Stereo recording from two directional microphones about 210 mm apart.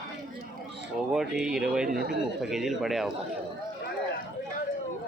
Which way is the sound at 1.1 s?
5° right (ahead or behind).